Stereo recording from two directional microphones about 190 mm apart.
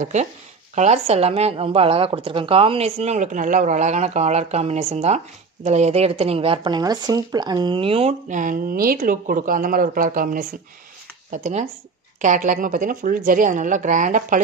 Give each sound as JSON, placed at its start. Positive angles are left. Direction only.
{"t": 0.0, "sound": "a woman's voice", "side_deg": -40}